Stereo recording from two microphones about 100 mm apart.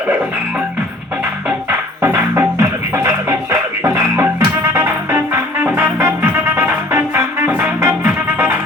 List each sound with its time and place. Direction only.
2.0 s music: 25° right (ahead or behind)